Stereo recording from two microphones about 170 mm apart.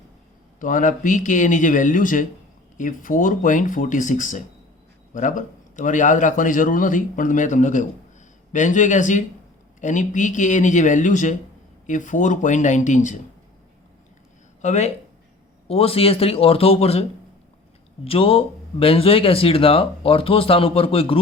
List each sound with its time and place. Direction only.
0.6 s a man's voice: 50° left (ahead or behind)
14.6 s a man's voice: 45° left (ahead or behind)